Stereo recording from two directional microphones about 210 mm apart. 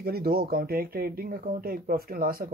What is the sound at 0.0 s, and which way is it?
Speech, 45° right (ahead or behind).